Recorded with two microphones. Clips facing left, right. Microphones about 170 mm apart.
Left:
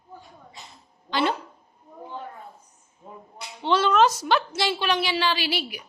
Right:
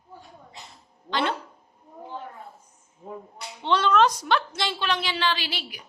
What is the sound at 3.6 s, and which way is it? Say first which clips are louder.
A woman's voice: left 1 dB; 5° left (ahead or behind).